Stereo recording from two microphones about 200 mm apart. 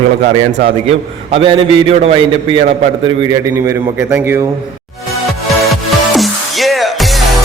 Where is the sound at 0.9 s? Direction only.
30° right (ahead or behind).